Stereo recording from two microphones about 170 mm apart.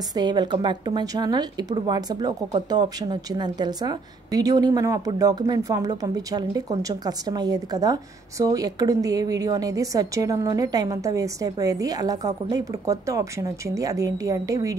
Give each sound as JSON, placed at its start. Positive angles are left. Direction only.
{"t": 0.1, "sound": "a woman's voice", "side_deg": -25}